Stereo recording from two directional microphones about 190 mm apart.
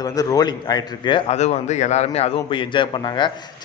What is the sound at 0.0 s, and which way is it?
A man's voice, 20° left (ahead or behind).